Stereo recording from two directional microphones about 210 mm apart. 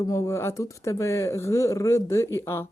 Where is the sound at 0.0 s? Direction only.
15° left (ahead or behind).